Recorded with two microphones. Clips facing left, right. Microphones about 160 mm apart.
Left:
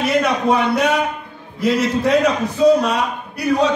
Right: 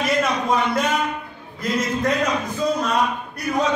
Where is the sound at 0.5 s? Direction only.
70° left (ahead or behind).